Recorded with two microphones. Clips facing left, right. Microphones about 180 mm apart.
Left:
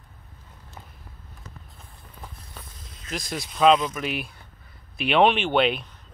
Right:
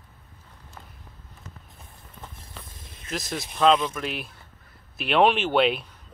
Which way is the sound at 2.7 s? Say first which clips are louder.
Even; 25° right (ahead or behind).